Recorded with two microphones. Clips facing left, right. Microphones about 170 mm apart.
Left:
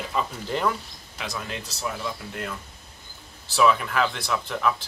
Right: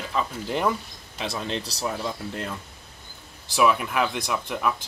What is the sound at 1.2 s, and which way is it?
Speech, 25° right (ahead or behind).